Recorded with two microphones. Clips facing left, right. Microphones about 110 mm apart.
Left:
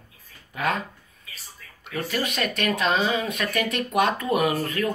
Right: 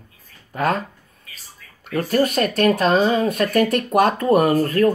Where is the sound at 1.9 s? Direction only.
45° right (ahead or behind).